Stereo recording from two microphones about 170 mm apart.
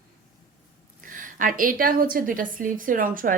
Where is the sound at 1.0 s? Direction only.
50° right (ahead or behind).